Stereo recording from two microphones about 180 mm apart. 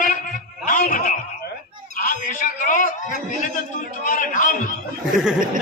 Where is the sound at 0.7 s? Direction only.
50° left (ahead or behind).